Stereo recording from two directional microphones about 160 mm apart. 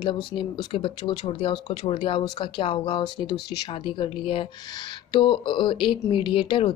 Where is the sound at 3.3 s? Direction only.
90° left.